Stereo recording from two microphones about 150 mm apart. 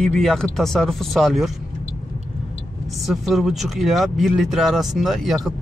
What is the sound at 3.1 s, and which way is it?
Speech, centre (ahead or behind).